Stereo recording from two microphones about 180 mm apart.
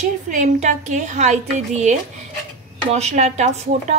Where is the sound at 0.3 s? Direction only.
45° right (ahead or behind).